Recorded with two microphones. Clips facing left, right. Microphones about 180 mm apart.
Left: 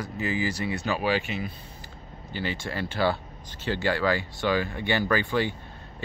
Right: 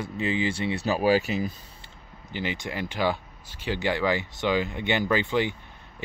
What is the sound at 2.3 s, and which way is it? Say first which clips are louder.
Speech: even; 20° right (ahead or behind).